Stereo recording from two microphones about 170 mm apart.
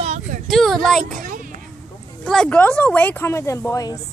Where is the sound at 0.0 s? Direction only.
40° right (ahead or behind).